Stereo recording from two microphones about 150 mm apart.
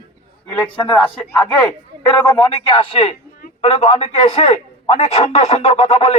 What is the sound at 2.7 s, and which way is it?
A man's voice, 35° left (ahead or behind).